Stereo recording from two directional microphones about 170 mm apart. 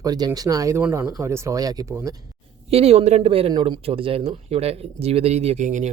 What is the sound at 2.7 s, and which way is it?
Speech, 35° right (ahead or behind).